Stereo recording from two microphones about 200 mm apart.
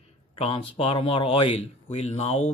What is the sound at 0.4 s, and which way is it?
A man's voice, 30° left (ahead or behind).